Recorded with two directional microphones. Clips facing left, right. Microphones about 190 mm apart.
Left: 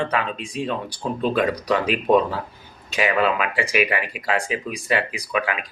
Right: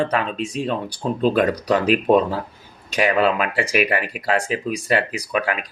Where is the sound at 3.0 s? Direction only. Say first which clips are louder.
Right 2 dB; 40° right (ahead or behind).